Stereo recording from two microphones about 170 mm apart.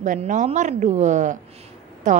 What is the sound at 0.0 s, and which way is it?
A woman's voice, 50° right (ahead or behind).